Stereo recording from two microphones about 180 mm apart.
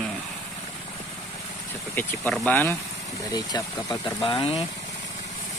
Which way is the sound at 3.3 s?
20° left (ahead or behind).